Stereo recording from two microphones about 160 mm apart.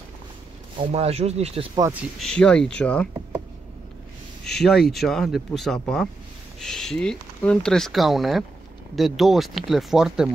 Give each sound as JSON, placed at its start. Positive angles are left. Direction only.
{"t": 0.7, "sound": "speech", "side_deg": -40}
{"t": 1.8, "sound": "speech", "side_deg": -10}
{"t": 2.1, "sound": "speech", "side_deg": 5}
{"t": 4.5, "sound": "speech", "side_deg": 5}